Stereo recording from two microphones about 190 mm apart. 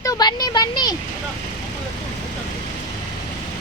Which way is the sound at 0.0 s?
20° left (ahead or behind).